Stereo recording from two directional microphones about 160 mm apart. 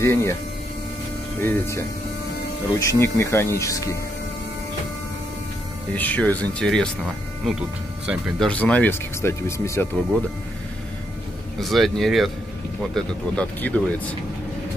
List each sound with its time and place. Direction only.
0.0 s speech: 15° left (ahead or behind)
1.4 s speech: 15° left (ahead or behind)
5.9 s speech: 10° left (ahead or behind)
8.1 s speech: 5° left (ahead or behind)
11.6 s speech: centre (ahead or behind)